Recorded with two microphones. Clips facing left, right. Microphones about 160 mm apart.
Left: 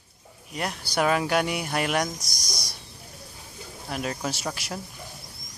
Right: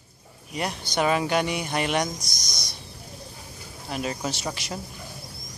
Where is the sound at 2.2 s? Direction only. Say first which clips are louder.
Even; 30° left (ahead or behind).